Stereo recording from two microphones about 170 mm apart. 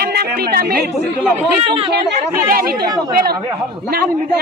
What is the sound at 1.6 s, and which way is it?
Speech, 30° right (ahead or behind).